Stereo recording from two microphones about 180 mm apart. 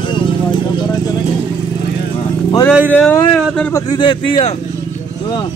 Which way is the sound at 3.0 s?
5° left (ahead or behind).